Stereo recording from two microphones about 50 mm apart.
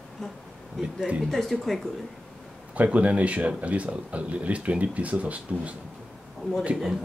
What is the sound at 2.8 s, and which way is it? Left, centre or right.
Speech, right.